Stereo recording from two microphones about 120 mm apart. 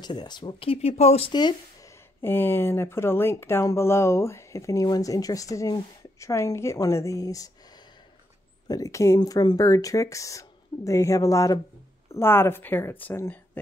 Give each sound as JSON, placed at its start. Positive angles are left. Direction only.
{"t": 0.0, "sound": "speech", "side_deg": 35}
{"t": 1.3, "sound": "speech", "side_deg": 35}
{"t": 2.2, "sound": "speech", "side_deg": 20}
{"t": 8.6, "sound": "speech", "side_deg": 30}